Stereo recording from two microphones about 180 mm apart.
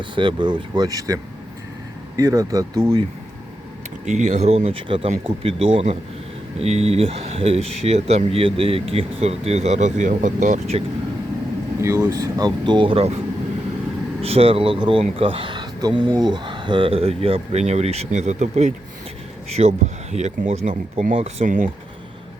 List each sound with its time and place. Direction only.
0.0 s speech: 25° right (ahead or behind)
4.0 s speech: 40° right (ahead or behind)
11.8 s speech: 15° right (ahead or behind); by 13.1 s 30° right (ahead or behind)
14.2 s speech: 35° right (ahead or behind)